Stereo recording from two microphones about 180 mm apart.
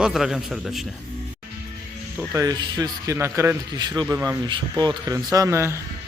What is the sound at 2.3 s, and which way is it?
A man's voice, 20° right (ahead or behind).